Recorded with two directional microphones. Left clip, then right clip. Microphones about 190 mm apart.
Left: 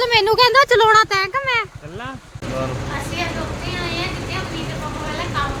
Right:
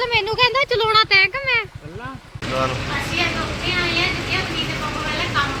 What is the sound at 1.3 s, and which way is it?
Speech, centre (ahead or behind).